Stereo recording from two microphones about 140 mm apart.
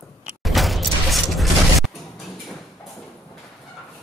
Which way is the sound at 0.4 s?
Centre (ahead or behind).